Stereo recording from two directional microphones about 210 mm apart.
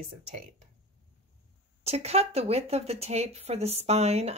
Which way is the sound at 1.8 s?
30° right (ahead or behind).